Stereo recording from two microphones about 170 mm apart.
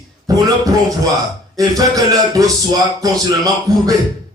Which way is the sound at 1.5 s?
20° right (ahead or behind).